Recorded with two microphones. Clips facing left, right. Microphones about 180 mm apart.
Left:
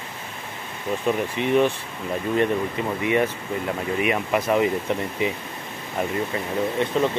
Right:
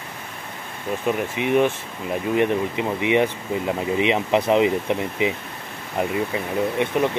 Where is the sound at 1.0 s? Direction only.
10° right (ahead or behind).